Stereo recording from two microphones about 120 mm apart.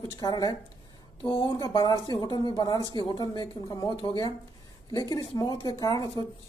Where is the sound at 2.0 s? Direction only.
40° left (ahead or behind).